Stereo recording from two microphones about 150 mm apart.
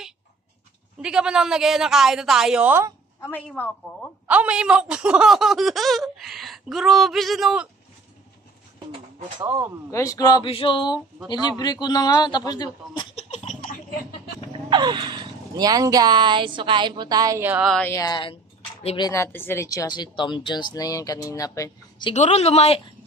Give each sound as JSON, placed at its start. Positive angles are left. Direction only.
{"t": 1.0, "sound": "a woman's voice", "side_deg": -5}
{"t": 3.2, "sound": "a woman's voice", "side_deg": 10}
{"t": 4.3, "sound": "a woman's voice", "side_deg": -10}
{"t": 9.8, "sound": "speech", "side_deg": 20}
{"t": 10.5, "sound": "male singing", "side_deg": 35}
{"t": 11.2, "sound": "speech", "side_deg": 30}
{"t": 13.1, "sound": "laughter", "side_deg": 45}
{"t": 14.7, "sound": "speech", "side_deg": -30}
{"t": 17.5, "sound": "a woman's voice", "side_deg": -5}
{"t": 17.9, "sound": "speech", "side_deg": 25}
{"t": 22.1, "sound": "speech", "side_deg": 45}